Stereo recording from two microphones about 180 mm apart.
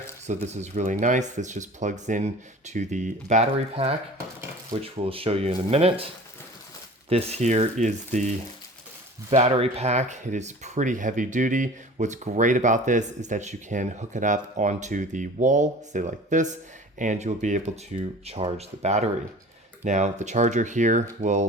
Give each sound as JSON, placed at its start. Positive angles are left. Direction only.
{"t": 0.3, "sound": "speech", "side_deg": -40}
{"t": 7.1, "sound": "speech", "side_deg": -35}
{"t": 9.3, "sound": "speech", "side_deg": -35}